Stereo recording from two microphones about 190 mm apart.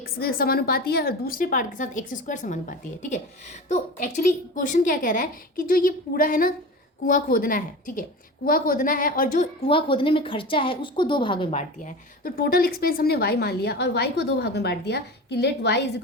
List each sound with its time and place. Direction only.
0.0 s a woman's voice: 50° left (ahead or behind); by 11.6 s 25° left (ahead or behind)
11.8 s a woman's voice: 45° left (ahead or behind); by 15.8 s 65° left (ahead or behind)